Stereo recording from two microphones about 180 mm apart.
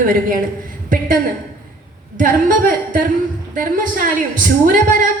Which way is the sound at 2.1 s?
50° right (ahead or behind).